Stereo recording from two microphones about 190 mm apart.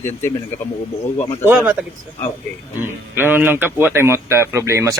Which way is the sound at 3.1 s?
10° right (ahead or behind).